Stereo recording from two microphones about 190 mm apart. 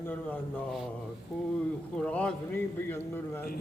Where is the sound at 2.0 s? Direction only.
5° left (ahead or behind).